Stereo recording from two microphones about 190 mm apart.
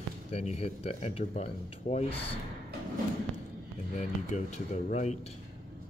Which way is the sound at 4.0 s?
40° left (ahead or behind).